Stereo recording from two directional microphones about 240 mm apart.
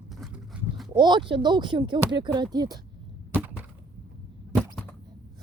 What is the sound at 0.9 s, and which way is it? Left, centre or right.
Speech, centre.